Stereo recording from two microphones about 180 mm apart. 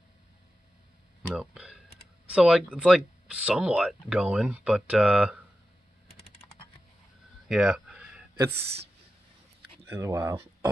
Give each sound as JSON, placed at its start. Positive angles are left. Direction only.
{"t": 1.3, "sound": "speech", "side_deg": -5}
{"t": 7.4, "sound": "a sound", "side_deg": -5}
{"t": 9.8, "sound": "speech", "side_deg": -15}